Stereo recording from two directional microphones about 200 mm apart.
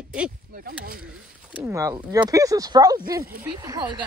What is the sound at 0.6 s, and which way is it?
Speech, 50° right (ahead or behind).